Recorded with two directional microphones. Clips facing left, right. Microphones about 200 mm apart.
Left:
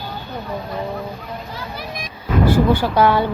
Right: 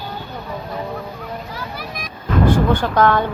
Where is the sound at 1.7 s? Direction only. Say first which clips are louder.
Left 1 dB; 25° left (ahead or behind).